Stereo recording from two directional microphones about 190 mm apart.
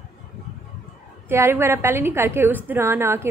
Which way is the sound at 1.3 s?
10° right (ahead or behind).